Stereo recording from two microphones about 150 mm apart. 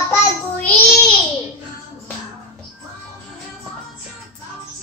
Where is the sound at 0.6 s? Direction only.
5° left (ahead or behind).